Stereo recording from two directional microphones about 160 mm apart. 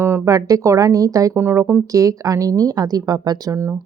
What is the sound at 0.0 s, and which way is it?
Speech, 15° right (ahead or behind).